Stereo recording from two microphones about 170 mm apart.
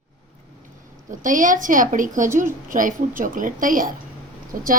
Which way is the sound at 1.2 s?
50° right (ahead or behind).